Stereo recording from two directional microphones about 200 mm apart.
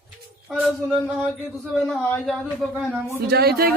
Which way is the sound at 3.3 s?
50° right (ahead or behind).